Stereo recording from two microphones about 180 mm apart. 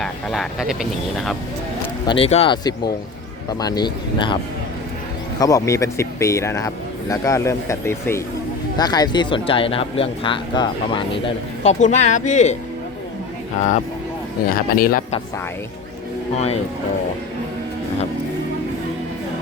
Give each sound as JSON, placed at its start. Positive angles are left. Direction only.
{"t": 0.0, "sound": "speech", "side_deg": 0}
{"t": 2.0, "sound": "speech", "side_deg": 30}
{"t": 5.4, "sound": "speech", "side_deg": 20}
{"t": 13.6, "sound": "speech", "side_deg": 45}
{"t": 14.5, "sound": "speech", "side_deg": 55}